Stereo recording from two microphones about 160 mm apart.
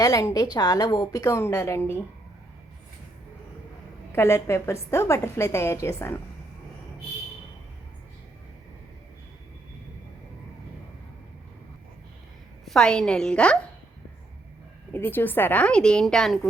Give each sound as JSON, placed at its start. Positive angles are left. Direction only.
{"t": 0.0, "sound": "a woman's voice", "side_deg": 20}
{"t": 4.1, "sound": "a woman's voice", "side_deg": 15}
{"t": 12.6, "sound": "a woman's voice", "side_deg": 5}
{"t": 14.9, "sound": "a woman's voice", "side_deg": 15}